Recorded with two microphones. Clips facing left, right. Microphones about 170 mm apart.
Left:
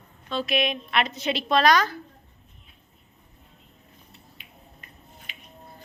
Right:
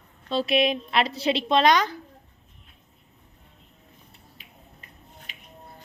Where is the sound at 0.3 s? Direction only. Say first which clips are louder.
Right 3 dB; 30° right (ahead or behind).